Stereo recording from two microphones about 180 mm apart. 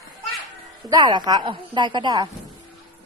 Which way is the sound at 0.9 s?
25° right (ahead or behind).